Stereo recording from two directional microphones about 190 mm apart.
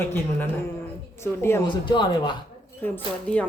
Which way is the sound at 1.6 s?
25° left (ahead or behind).